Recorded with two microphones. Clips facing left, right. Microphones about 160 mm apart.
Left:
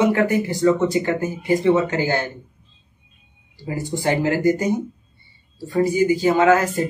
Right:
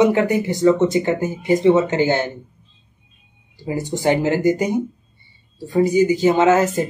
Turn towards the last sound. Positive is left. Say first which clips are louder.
# right 1 dB
turn(degrees=-20)  # may be behind; listen again after turning